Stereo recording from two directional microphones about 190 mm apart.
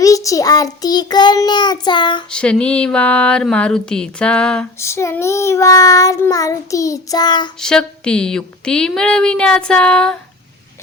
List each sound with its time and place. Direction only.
0.0 s child singing: 15° left (ahead or behind)
2.3 s a woman's voice: 5° left (ahead or behind)
4.8 s child singing: 15° left (ahead or behind)
7.6 s a woman's voice: 5° left (ahead or behind)